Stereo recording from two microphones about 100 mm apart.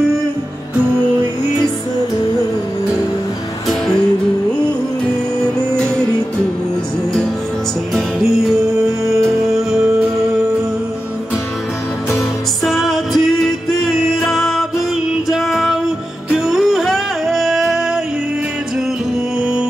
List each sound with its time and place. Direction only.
7.9 s music: centre (ahead or behind)
9.7 s music: 5° right (ahead or behind)
12.6 s music: centre (ahead or behind)
14.2 s music: centre (ahead or behind)